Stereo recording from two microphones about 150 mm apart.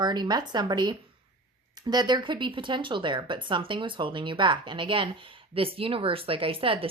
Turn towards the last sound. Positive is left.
turn(degrees=-40)  # may be behind; listen again after turning